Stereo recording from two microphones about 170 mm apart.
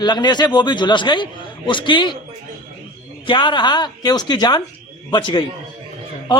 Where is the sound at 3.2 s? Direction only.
30° left (ahead or behind).